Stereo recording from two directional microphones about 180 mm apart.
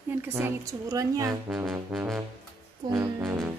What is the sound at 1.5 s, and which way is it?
Speech, centre (ahead or behind).